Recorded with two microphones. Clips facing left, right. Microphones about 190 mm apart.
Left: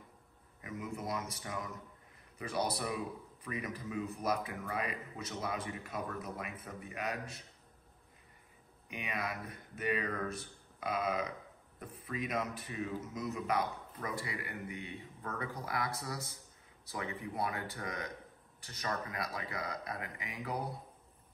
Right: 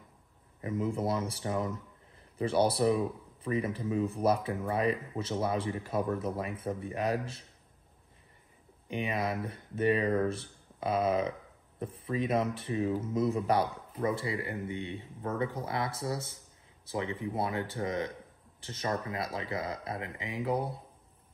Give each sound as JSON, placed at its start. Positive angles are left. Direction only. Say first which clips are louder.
{"t": 0.6, "sound": "speech", "louder": "right 10 dB", "side_deg": -30}
{"t": 8.8, "sound": "speech", "louder": "right 8 dB", "side_deg": -30}